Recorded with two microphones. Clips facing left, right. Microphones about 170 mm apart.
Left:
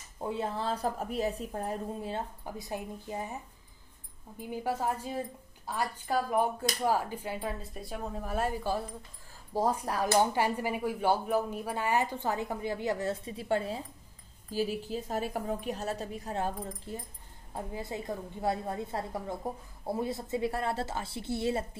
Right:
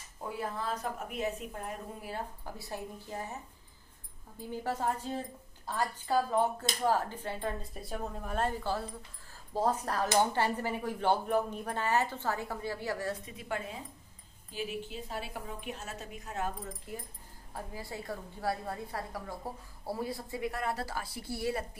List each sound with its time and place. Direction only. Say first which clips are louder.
0.2 s a woman's voice: left 4 dB; 25° left (ahead or behind)
4.4 s a woman's voice: left 2 dB; 10° left (ahead or behind)